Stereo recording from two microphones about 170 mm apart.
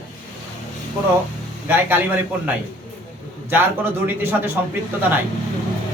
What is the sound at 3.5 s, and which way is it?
A man's voice, 10° right (ahead or behind).